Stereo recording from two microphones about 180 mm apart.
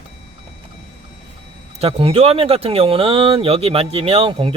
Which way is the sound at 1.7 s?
35° right (ahead or behind).